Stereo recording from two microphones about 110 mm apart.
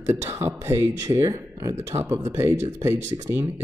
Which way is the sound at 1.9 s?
20° right (ahead or behind).